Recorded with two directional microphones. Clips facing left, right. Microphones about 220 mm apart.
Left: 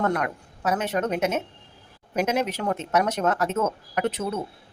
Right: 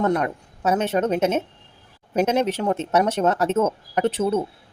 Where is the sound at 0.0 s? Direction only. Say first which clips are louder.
Right 4 dB; 25° right (ahead or behind).